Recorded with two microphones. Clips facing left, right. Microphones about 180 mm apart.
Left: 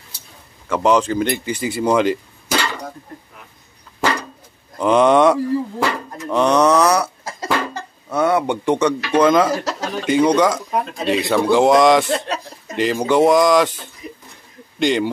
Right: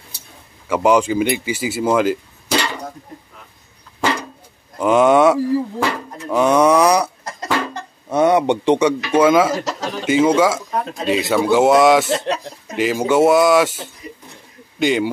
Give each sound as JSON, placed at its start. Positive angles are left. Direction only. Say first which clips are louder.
{"t": 0.7, "sound": "speech", "louder": "right 1 dB", "side_deg": -10}
{"t": 4.7, "sound": "speech", "louder": "even", "side_deg": -5}
{"t": 7.2, "sound": "cough", "louder": "even", "side_deg": 5}
{"t": 8.1, "sound": "speech", "louder": "right 3 dB", "side_deg": -20}
{"t": 9.0, "sound": "speech", "louder": "left 1 dB", "side_deg": -5}
{"t": 14.8, "sound": "speech", "louder": "even", "side_deg": -5}